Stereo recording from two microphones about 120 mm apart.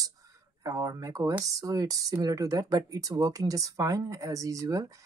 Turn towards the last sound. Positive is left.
turn(degrees=-30)  # may be behind; listen again after turning